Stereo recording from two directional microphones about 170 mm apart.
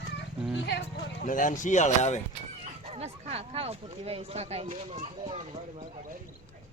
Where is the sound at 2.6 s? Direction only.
40° right (ahead or behind).